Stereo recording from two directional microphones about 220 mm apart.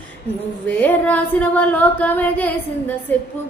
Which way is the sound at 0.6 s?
5° left (ahead or behind).